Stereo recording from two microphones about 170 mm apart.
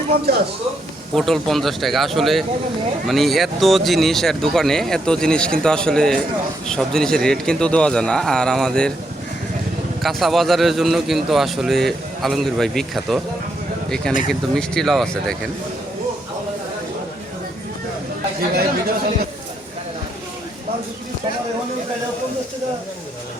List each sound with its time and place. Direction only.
1.1 s a man's voice: centre (ahead or behind)
10.0 s a man's voice: centre (ahead or behind)
18.5 s speech: 60° right (ahead or behind)